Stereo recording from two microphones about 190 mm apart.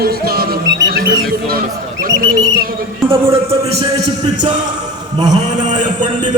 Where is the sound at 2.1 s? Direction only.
55° right (ahead or behind).